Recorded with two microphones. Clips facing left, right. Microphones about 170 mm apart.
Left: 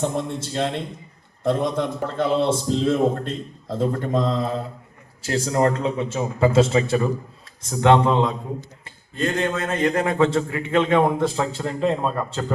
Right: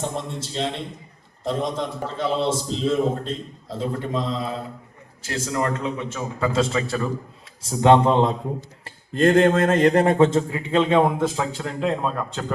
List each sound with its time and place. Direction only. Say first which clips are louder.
0.0 s a man's voice: left 4 dB; 55° left (ahead or behind)
5.2 s a man's voice: left 5 dB; 30° left (ahead or behind)
7.8 s a man's voice: right 1 dB; 20° right (ahead or behind)
9.1 s a man's voice: right 7 dB; 50° right (ahead or behind); by 11.0 s 15° right (ahead or behind)
11.2 s a man's voice: left 1 dB; centre (ahead or behind)